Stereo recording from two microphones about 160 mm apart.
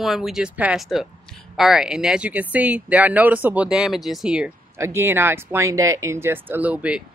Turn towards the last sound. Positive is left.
turn(degrees=-10)  # may be behind; listen again after turning